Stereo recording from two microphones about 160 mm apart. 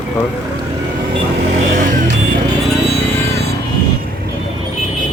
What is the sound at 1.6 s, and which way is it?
Vehicle, 50° right (ahead or behind).